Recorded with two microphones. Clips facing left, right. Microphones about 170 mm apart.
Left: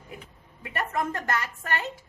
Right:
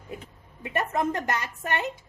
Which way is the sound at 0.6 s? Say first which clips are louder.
Right 3 dB; 20° right (ahead or behind).